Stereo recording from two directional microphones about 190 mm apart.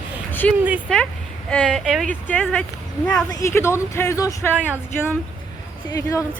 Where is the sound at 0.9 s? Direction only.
5° left (ahead or behind).